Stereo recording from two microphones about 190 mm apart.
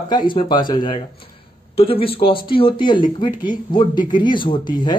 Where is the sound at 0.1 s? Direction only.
25° left (ahead or behind).